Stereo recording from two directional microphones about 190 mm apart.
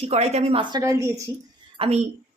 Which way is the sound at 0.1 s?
35° right (ahead or behind).